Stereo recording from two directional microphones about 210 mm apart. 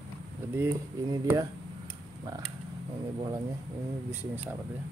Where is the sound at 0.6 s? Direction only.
15° right (ahead or behind).